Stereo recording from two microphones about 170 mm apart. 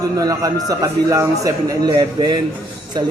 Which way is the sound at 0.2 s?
20° right (ahead or behind).